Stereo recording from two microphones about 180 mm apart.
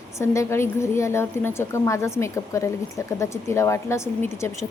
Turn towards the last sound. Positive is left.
turn(degrees=15)  # may be behind; listen again after turning